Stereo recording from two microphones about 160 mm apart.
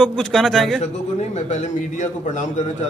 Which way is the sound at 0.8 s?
45° left (ahead or behind).